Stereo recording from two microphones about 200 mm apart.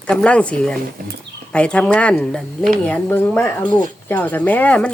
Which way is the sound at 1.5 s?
5° left (ahead or behind).